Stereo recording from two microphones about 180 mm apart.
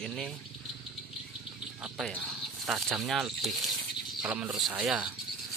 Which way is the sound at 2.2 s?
5° right (ahead or behind).